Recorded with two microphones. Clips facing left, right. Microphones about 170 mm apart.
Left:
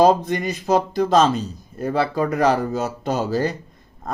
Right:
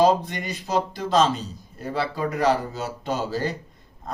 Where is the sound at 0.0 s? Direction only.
45° left (ahead or behind).